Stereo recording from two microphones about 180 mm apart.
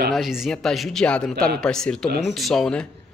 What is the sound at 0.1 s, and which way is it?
Speech, centre (ahead or behind).